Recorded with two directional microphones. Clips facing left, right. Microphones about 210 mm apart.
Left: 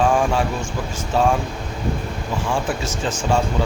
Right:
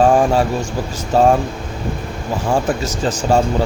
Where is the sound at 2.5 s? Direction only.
40° right (ahead or behind).